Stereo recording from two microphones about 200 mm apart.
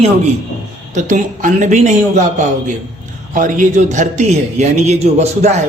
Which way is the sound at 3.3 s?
40° right (ahead or behind).